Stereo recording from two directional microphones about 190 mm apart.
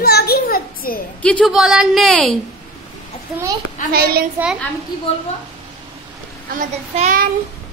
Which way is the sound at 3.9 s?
55° right (ahead or behind).